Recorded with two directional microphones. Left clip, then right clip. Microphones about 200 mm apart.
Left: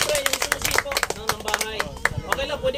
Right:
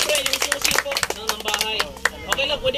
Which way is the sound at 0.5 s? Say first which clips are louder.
Right 2 dB; 40° left (ahead or behind).